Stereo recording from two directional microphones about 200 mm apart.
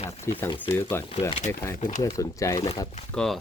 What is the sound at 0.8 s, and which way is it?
Speech, 10° left (ahead or behind).